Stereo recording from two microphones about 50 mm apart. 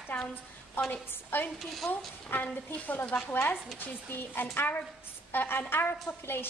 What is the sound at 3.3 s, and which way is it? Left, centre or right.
A woman's voice, left.